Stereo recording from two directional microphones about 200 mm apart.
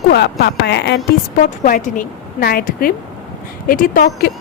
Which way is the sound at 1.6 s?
40° left (ahead or behind).